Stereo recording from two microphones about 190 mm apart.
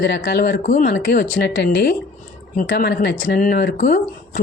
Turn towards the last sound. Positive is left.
turn(degrees=45)  # may be behind; listen again after turning